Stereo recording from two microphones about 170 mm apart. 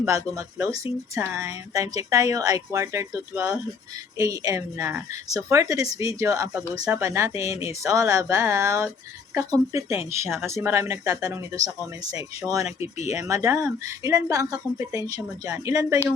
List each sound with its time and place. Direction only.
0.0 s a woman's voice: 15° right (ahead or behind)